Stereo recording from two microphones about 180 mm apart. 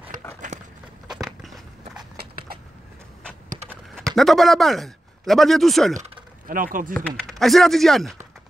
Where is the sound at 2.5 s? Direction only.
55° right (ahead or behind).